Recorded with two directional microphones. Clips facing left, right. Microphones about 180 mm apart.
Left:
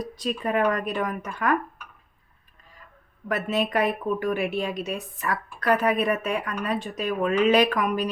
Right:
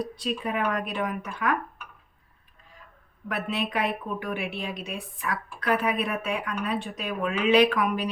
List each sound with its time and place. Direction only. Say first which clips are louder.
0.0 s a woman's voice: left 1 dB; 45° left (ahead or behind)
3.2 s a woman's voice: left 4 dB; 45° left (ahead or behind)